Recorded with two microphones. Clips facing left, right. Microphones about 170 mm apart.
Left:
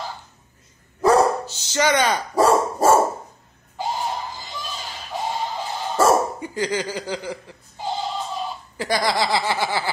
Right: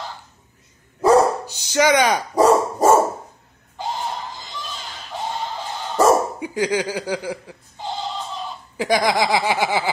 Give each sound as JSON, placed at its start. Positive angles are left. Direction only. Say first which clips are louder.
{"t": 1.0, "sound": "dog", "louder": "right 2 dB", "side_deg": -15}
{"t": 5.9, "sound": "dog", "louder": "right 2 dB", "side_deg": -15}
{"t": 8.7, "sound": "speech", "louder": "right 3 dB", "side_deg": -15}